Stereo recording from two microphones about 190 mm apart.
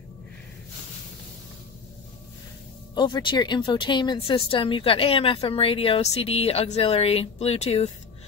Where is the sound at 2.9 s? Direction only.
25° left (ahead or behind).